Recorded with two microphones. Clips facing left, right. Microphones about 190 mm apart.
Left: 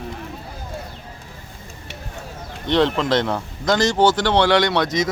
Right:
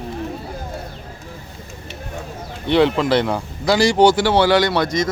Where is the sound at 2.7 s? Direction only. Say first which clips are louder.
Right 3 dB; 5° right (ahead or behind).